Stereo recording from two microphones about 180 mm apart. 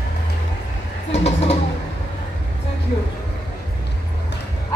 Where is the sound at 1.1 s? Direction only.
35° left (ahead or behind).